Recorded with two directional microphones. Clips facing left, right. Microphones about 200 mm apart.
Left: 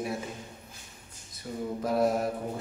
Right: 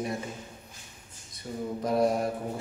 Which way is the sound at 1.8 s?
Centre (ahead or behind).